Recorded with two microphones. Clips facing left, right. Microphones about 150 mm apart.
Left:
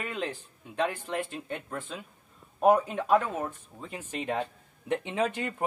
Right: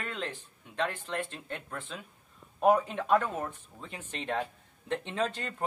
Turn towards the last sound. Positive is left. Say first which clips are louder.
# left 3 dB
turn(degrees=15)  # may be behind; listen again after turning